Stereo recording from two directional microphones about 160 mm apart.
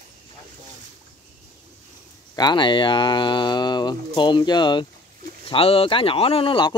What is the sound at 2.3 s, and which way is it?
Speech, 25° left (ahead or behind).